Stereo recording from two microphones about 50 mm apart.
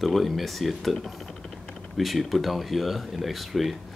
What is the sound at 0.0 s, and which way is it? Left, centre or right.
Speech, centre.